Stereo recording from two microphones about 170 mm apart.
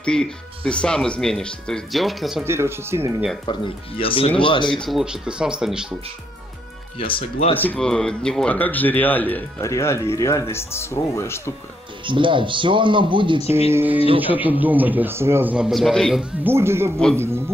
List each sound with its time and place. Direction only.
0.0 s speech: 5° left (ahead or behind)
2.4 s a man's voice: 15° right (ahead or behind)
3.4 s speech: 30° left (ahead or behind)
4.7 s speech: centre (ahead or behind)
7.0 s speech: 30° left (ahead or behind)
7.5 s speech: 10° left (ahead or behind)
12.1 s speech: 30° right (ahead or behind)
13.7 s a man's voice: 15° right (ahead or behind)
16.4 s a man's voice: 15° right (ahead or behind)